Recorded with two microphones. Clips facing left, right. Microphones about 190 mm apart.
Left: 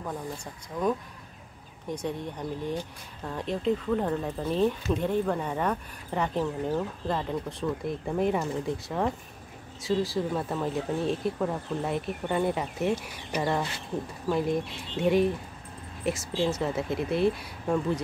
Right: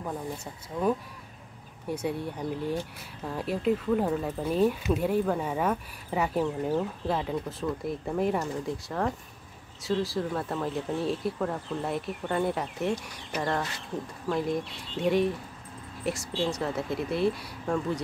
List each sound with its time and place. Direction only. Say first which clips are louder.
0.7 s speech: even; 25° right (ahead or behind)
1.9 s speech: right 1 dB; 10° right (ahead or behind)